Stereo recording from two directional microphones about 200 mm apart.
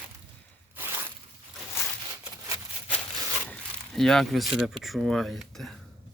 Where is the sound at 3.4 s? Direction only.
5° left (ahead or behind).